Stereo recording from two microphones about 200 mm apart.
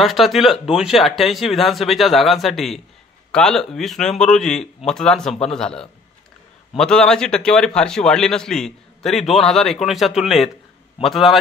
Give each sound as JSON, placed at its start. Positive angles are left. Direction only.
{"t": 0.0, "sound": "speech", "side_deg": 0}